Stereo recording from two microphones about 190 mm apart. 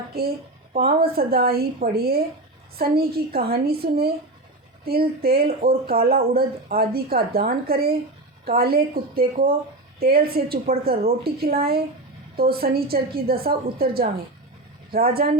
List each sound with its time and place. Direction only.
0.1 s speech: 55° right (ahead or behind)